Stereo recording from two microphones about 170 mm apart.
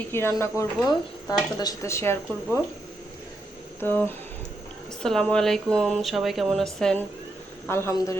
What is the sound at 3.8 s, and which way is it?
Speech, 10° left (ahead or behind).